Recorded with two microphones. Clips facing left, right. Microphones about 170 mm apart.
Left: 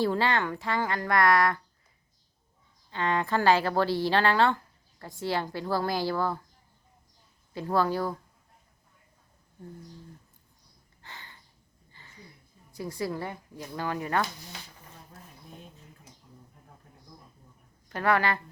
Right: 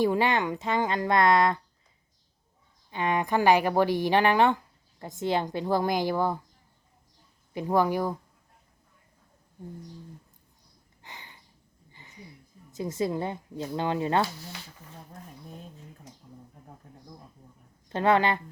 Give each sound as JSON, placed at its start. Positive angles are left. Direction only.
{"t": 0.0, "sound": "speech", "side_deg": -15}
{"t": 2.9, "sound": "speech", "side_deg": -15}
{"t": 7.5, "sound": "speech", "side_deg": -15}
{"t": 11.0, "sound": "a sound", "side_deg": -15}
{"t": 12.7, "sound": "speech", "side_deg": -20}
{"t": 17.8, "sound": "speech", "side_deg": -25}